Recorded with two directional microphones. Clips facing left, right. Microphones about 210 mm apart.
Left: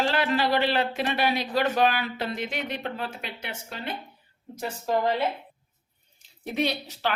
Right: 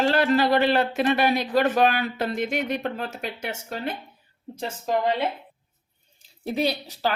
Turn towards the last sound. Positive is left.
turn(degrees=-35)  # may be behind; listen again after turning